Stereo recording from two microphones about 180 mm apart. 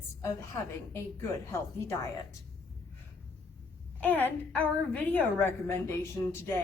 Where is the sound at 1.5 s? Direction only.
15° left (ahead or behind).